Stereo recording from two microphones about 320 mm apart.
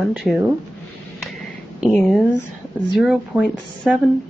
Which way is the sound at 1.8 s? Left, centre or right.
Centre.